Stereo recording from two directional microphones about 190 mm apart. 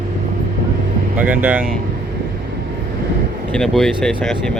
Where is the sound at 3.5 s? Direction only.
5° left (ahead or behind).